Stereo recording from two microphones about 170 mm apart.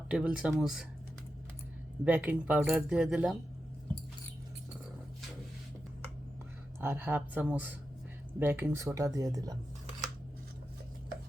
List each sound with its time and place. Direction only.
0.1 s speech: 5° right (ahead or behind)
2.0 s speech: 10° right (ahead or behind)
6.7 s speech: 15° right (ahead or behind)